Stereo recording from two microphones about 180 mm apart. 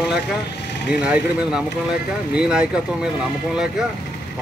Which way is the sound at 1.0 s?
5° right (ahead or behind).